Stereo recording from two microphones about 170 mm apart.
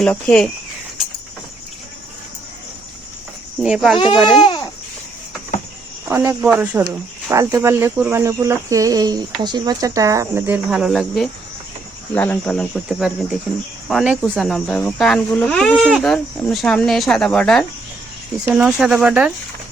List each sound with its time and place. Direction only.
0.0 s speech: 5° left (ahead or behind)
3.6 s speech: 5° right (ahead or behind)
3.9 s speech: 25° left (ahead or behind)
4.4 s babbling: 25° left (ahead or behind)
6.1 s speech: 10° right (ahead or behind); by 17.7 s 5° left (ahead or behind)
18.4 s speech: 5° right (ahead or behind)